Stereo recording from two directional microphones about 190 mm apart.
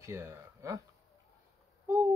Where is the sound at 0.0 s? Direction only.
15° right (ahead or behind).